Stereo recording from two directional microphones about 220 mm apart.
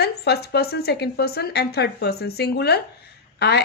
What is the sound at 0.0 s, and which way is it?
Speech, 45° left (ahead or behind).